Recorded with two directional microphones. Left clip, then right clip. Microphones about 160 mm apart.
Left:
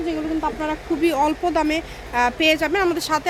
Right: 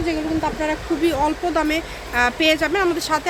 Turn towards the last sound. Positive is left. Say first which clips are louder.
# right 1 dB
turn(degrees=25)  # may be behind; listen again after turning